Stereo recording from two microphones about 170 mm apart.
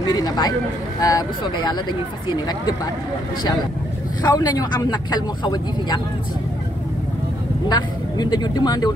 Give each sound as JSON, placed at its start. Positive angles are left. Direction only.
{"t": 0.0, "sound": "speech", "side_deg": 25}
{"t": 4.2, "sound": "speech", "side_deg": 25}
{"t": 7.6, "sound": "speech", "side_deg": 25}